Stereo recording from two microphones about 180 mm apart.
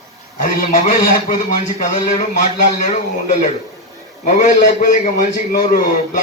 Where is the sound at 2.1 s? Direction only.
40° left (ahead or behind).